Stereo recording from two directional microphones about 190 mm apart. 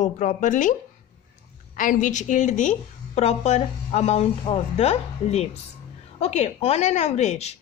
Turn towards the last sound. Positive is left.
turn(degrees=35)  # may be behind; listen again after turning